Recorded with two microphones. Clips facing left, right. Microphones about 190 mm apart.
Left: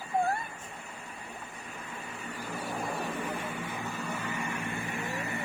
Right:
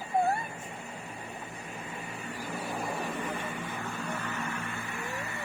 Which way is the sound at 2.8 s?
Centre (ahead or behind).